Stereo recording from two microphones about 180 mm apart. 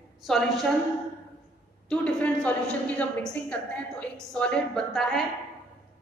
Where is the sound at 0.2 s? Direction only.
Centre (ahead or behind).